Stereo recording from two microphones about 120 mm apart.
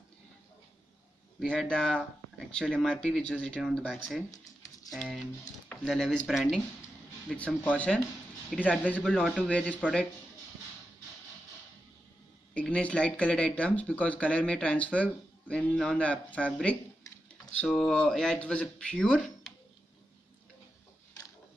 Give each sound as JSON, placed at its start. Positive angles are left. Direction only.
{"t": 1.4, "sound": "speech", "side_deg": 5}
{"t": 4.3, "sound": "a sound", "side_deg": 30}
{"t": 5.9, "sound": "speech", "side_deg": 0}
{"t": 7.2, "sound": "speech", "side_deg": 10}
{"t": 12.5, "sound": "speech", "side_deg": 10}